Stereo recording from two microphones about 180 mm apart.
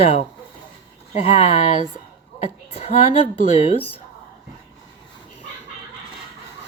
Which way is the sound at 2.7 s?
35° left (ahead or behind).